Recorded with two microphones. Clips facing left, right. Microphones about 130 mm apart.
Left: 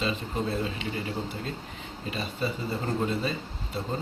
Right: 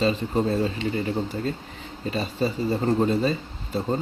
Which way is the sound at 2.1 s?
40° right (ahead or behind).